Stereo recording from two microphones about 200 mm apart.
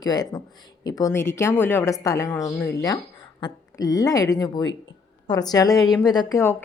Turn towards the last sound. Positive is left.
turn(degrees=15)  # may be behind; listen again after turning